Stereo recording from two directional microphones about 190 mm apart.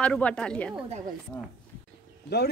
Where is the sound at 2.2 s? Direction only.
55° left (ahead or behind).